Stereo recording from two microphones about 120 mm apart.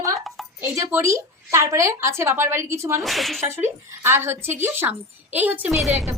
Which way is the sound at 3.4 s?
20° right (ahead or behind).